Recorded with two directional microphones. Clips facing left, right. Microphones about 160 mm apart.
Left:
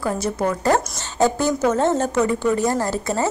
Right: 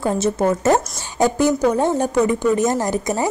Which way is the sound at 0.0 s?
25° right (ahead or behind).